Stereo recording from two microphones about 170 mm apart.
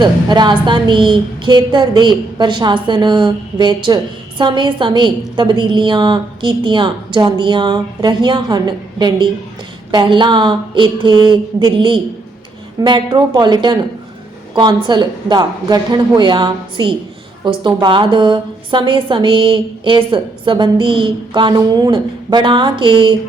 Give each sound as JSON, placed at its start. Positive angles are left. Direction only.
{"t": 0.0, "sound": "a woman's voice", "side_deg": -25}